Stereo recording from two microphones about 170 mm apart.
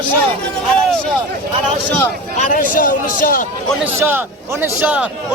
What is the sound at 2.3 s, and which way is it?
A man's voice, 50° left (ahead or behind).